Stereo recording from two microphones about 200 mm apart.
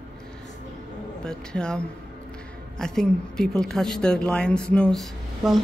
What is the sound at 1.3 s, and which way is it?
A woman's voice, 5° left (ahead or behind).